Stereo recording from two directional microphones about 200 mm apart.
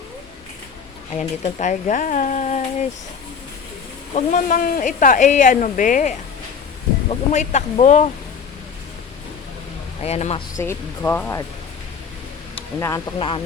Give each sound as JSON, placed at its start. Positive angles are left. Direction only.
{"t": 1.1, "sound": "speech", "side_deg": 35}
{"t": 4.1, "sound": "speech", "side_deg": 40}
{"t": 10.0, "sound": "speech", "side_deg": 35}
{"t": 10.6, "sound": "speech", "side_deg": 10}
{"t": 12.5, "sound": "speech", "side_deg": 15}
{"t": 13.1, "sound": "speech", "side_deg": 25}